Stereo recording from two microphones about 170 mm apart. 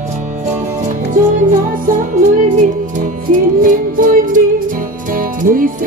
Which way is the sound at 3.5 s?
55° right (ahead or behind).